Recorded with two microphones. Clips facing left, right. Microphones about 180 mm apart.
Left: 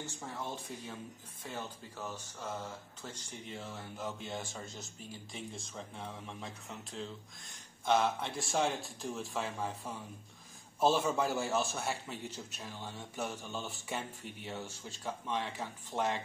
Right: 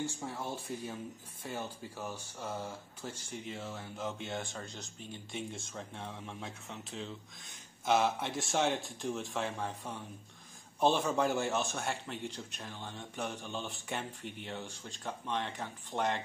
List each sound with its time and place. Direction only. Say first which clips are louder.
0.0 s speech: right 4 dB; 10° right (ahead or behind)
3.0 s speech: right 4 dB; 5° right (ahead or behind)